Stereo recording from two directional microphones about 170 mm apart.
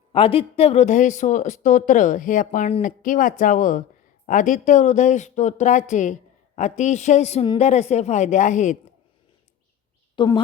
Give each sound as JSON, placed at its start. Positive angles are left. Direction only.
{"t": 0.1, "sound": "speech", "side_deg": 35}
{"t": 10.2, "sound": "a woman's voice", "side_deg": 30}